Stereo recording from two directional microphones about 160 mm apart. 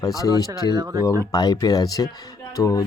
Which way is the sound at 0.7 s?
20° right (ahead or behind).